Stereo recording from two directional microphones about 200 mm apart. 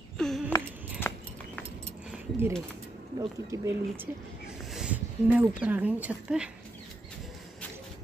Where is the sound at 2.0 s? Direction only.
5° right (ahead or behind).